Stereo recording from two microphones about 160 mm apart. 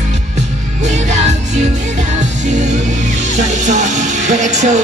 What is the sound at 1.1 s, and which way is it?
Music, 45° right (ahead or behind).